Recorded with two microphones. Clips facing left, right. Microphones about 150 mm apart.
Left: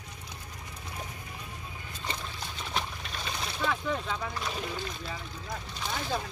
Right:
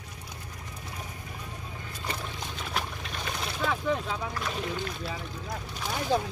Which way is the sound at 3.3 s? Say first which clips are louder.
Right 1 dB; 5° right (ahead or behind).